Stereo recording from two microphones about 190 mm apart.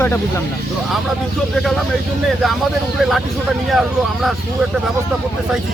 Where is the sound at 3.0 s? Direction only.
Centre (ahead or behind).